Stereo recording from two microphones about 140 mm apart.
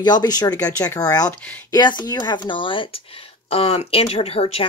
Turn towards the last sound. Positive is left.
turn(degrees=45)  # may be behind; listen again after turning